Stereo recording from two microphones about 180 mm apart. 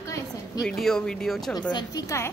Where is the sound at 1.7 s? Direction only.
20° left (ahead or behind).